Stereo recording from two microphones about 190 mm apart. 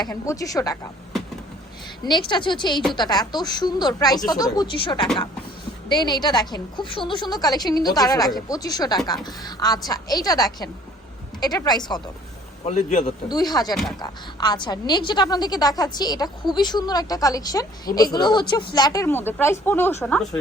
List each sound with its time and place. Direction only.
0.0 s a woman's voice: 20° left (ahead or behind)
2.0 s a woman's voice: 25° left (ahead or behind)
12.6 s a man's voice: 35° left (ahead or behind)
13.2 s a woman's voice: 20° left (ahead or behind)